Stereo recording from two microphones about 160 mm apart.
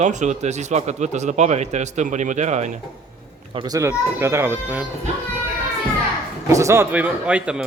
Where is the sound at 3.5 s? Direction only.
25° right (ahead or behind).